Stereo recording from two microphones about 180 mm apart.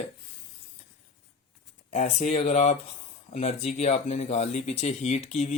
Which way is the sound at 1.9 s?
40° left (ahead or behind).